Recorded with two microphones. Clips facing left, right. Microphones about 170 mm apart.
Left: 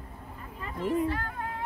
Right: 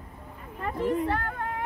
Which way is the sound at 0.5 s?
60° right (ahead or behind).